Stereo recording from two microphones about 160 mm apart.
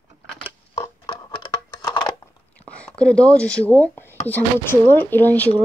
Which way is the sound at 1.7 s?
20° left (ahead or behind).